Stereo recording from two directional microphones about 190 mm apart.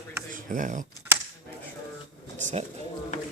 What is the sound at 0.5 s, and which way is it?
Speech, 45° right (ahead or behind).